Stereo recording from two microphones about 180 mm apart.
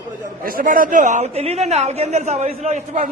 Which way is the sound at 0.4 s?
50° right (ahead or behind).